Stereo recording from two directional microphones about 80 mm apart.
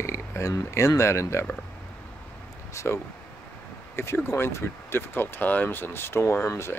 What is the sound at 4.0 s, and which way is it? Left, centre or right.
Speech, left.